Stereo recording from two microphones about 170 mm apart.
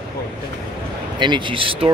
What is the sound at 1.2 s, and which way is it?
Speech, 30° right (ahead or behind).